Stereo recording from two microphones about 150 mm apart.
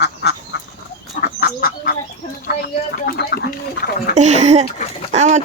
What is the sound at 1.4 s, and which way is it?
Bird, 75° left (ahead or behind).